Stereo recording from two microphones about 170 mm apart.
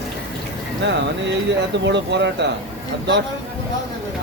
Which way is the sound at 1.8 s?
90° right.